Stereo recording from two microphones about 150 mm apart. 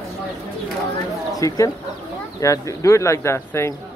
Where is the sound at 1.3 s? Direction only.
20° left (ahead or behind).